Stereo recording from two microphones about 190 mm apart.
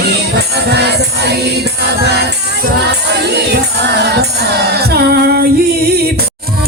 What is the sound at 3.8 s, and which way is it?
Music, 60° right (ahead or behind).